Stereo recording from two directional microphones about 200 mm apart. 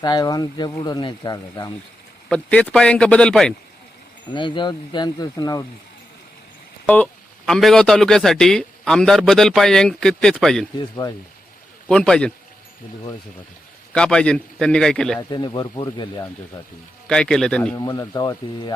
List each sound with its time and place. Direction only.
0.0 s speech: 20° left (ahead or behind)
2.3 s a man's voice: 5° left (ahead or behind)
4.4 s speech: 25° left (ahead or behind)
6.8 s a man's voice: 5° left (ahead or behind)
10.8 s speech: 20° left (ahead or behind)
11.9 s a man's voice: 5° left (ahead or behind)
13.9 s a man's voice: 5° left (ahead or behind)
15.3 s speech: 20° left (ahead or behind)
17.1 s a man's voice: 5° left (ahead or behind)
17.7 s speech: 20° left (ahead or behind)